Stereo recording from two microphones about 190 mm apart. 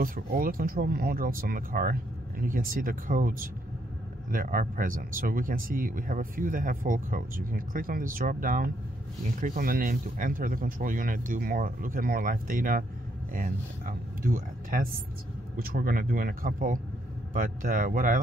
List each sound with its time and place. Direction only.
0.0 s speech: 50° right (ahead or behind)